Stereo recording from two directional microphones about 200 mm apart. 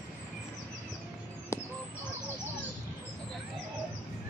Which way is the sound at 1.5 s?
15° left (ahead or behind).